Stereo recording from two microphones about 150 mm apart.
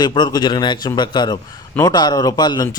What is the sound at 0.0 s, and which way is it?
Speech, 30° left (ahead or behind).